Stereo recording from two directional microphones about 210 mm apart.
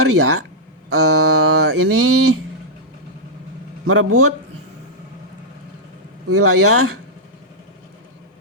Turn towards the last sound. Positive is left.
turn(degrees=-90)